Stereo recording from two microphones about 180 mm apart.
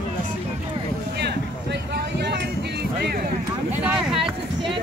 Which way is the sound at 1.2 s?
65° right (ahead or behind).